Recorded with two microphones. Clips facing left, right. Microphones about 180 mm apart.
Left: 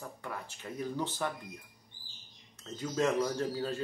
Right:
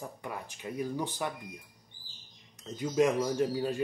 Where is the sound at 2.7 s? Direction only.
15° right (ahead or behind).